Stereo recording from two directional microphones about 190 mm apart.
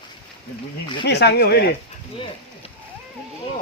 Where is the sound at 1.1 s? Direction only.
60° left (ahead or behind).